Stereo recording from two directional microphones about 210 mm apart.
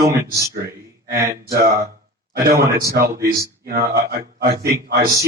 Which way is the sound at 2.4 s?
45° right (ahead or behind).